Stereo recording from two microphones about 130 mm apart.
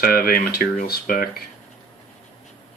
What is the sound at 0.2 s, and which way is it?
Speech, 90° left.